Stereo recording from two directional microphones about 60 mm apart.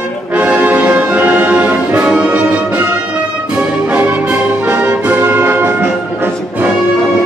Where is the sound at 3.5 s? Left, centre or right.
Centre.